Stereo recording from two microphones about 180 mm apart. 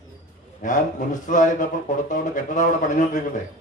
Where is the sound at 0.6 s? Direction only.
45° left (ahead or behind).